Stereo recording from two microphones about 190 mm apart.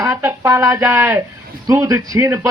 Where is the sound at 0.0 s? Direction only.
15° right (ahead or behind).